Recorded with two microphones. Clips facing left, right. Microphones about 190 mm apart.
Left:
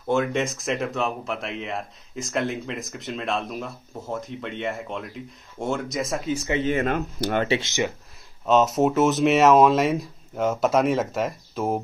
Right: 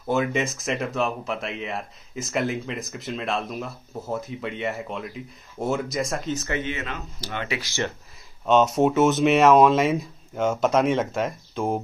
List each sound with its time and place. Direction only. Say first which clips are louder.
0.1 s speech: left 1 dB; 5° right (ahead or behind)
6.6 s speech: left 8 dB; 50° left (ahead or behind)
7.4 s speech: left 6 dB; 25° left (ahead or behind)
8.5 s speech: even; centre (ahead or behind)